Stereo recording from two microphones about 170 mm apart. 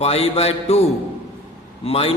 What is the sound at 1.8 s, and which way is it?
Speech, 35° left (ahead or behind).